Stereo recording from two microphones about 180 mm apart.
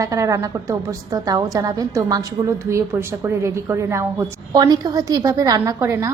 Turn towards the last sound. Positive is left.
turn(degrees=-15)  # may be behind; listen again after turning